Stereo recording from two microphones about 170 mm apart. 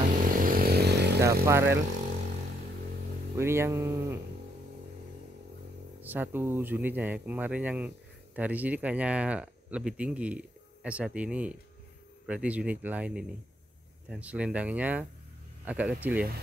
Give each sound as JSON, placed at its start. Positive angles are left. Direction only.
{"t": 0.4, "sound": "vehicle", "side_deg": -55}
{"t": 1.2, "sound": "speech", "side_deg": -15}
{"t": 3.3, "sound": "speech", "side_deg": -15}
{"t": 5.9, "sound": "speech", "side_deg": -10}